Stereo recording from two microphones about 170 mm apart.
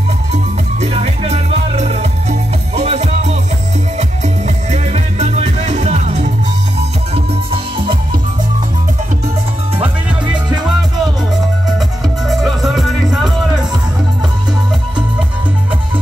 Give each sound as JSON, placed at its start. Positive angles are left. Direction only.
{"t": 0.3, "sound": "music", "side_deg": -40}
{"t": 12.3, "sound": "music", "side_deg": 0}